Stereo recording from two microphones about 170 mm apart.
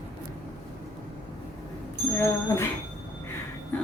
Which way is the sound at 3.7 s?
10° left (ahead or behind).